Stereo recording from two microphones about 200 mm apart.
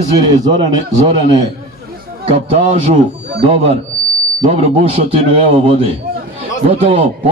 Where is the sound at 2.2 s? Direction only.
30° right (ahead or behind).